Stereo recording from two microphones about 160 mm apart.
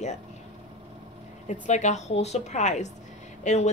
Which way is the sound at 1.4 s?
50° left (ahead or behind).